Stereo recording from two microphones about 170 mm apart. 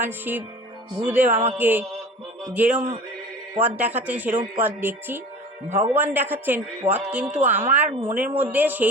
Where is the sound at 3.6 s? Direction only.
10° right (ahead or behind).